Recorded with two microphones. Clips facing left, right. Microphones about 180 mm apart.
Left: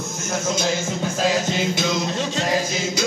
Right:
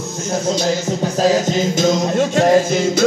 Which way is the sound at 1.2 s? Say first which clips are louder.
Right 6 dB; 40° right (ahead or behind).